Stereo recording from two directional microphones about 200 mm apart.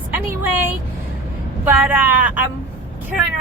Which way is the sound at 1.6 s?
10° right (ahead or behind).